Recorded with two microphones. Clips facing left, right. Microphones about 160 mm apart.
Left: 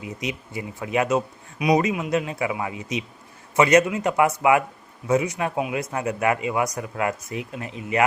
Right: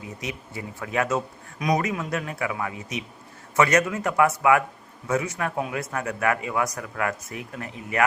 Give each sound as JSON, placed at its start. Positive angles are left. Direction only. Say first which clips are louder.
{"t": 0.0, "sound": "speech", "louder": "left 4 dB", "side_deg": 15}